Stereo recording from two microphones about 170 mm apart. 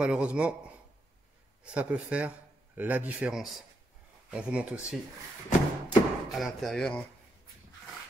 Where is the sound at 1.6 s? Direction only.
5° right (ahead or behind).